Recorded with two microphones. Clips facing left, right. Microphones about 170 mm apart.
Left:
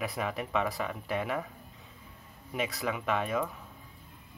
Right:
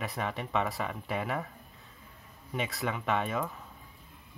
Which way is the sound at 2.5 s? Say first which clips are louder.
Left 1 dB; centre (ahead or behind).